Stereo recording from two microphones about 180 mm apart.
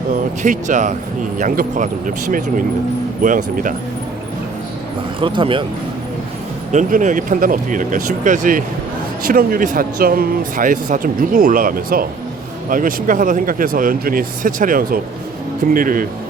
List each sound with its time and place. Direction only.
0.1 s speech: 45° right (ahead or behind)
5.2 s speech: 30° right (ahead or behind)
6.7 s speech: 40° right (ahead or behind)